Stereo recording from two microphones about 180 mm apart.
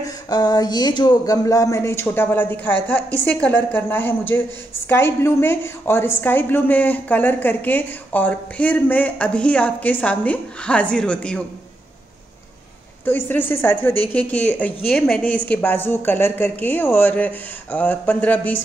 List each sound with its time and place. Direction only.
0.0 s a woman's voice: 20° left (ahead or behind); by 11.4 s 5° left (ahead or behind)
13.0 s a woman's voice: 10° left (ahead or behind)